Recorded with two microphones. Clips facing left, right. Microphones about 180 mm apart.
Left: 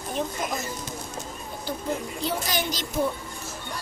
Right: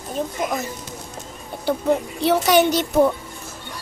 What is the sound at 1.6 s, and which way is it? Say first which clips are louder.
Speech: right 10 dB; 70° right (ahead or behind).